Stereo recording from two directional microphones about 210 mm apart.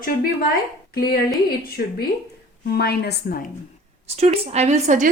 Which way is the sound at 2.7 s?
50° left (ahead or behind).